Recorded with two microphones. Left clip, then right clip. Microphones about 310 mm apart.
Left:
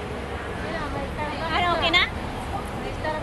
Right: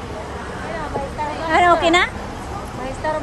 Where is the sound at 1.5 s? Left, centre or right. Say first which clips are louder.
Right 10 dB; right.